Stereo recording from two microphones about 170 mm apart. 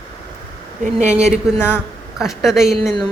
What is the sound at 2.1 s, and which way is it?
Speech, centre (ahead or behind).